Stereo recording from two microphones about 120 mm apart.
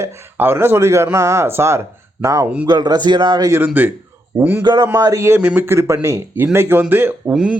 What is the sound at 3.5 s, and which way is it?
Speech, 15° right (ahead or behind).